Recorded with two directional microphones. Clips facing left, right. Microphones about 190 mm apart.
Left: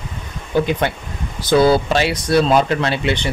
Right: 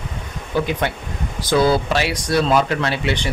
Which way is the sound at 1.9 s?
25° left (ahead or behind).